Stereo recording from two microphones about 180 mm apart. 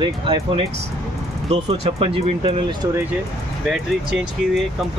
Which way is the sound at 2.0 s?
30° right (ahead or behind).